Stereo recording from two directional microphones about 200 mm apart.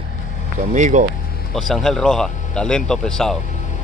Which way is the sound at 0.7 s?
40° right (ahead or behind).